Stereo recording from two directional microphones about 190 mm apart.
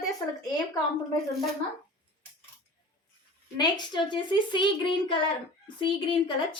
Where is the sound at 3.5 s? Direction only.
20° left (ahead or behind).